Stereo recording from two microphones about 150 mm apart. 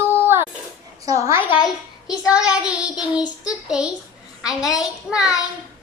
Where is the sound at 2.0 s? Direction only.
5° right (ahead or behind).